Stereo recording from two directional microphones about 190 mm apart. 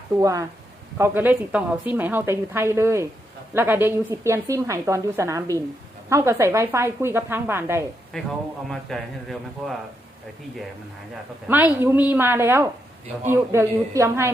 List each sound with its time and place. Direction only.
0.2 s a woman's voice: 15° right (ahead or behind)
8.1 s speech: 5° left (ahead or behind)
11.4 s a woman's voice: 10° right (ahead or behind)